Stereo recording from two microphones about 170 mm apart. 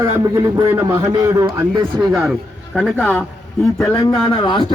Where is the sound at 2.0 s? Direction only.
5° right (ahead or behind).